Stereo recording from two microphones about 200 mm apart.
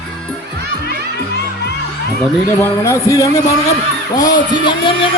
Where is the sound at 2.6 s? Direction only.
15° left (ahead or behind).